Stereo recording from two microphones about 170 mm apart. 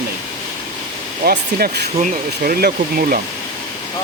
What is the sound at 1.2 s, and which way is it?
Speech, 65° right (ahead or behind).